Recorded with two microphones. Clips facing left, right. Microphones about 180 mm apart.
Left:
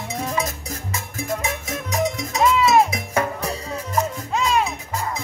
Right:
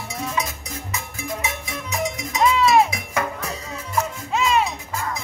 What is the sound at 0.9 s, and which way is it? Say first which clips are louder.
Music: left 3 dB; 45° left (ahead or behind).